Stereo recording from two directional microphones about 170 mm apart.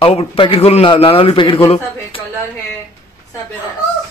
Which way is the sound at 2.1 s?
30° left (ahead or behind).